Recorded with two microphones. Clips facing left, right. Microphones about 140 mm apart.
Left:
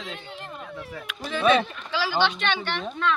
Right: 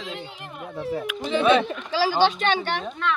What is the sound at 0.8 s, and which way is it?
Speech, 30° right (ahead or behind).